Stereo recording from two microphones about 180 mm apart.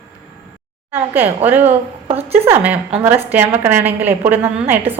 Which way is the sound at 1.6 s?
35° right (ahead or behind).